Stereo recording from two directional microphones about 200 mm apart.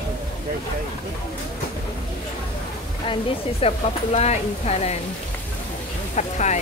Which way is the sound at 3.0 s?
25° left (ahead or behind).